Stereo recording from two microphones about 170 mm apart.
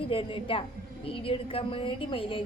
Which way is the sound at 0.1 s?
30° left (ahead or behind).